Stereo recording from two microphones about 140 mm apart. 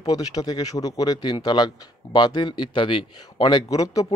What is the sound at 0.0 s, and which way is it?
Speech, 25° left (ahead or behind).